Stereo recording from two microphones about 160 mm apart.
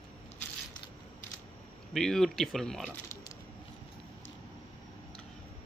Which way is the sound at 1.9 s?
Centre (ahead or behind).